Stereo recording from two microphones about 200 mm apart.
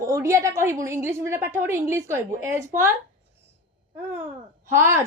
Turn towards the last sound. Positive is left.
turn(degrees=-10)  # may be behind; listen again after turning